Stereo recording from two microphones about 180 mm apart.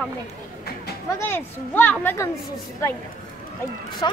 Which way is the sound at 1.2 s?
10° left (ahead or behind).